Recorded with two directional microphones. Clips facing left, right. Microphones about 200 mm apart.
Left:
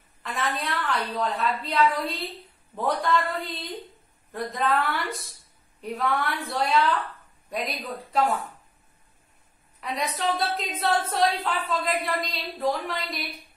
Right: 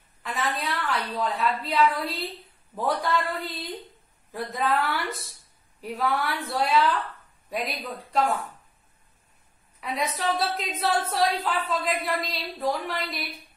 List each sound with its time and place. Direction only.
0.2 s a woman's voice: centre (ahead or behind)
9.8 s a woman's voice: centre (ahead or behind)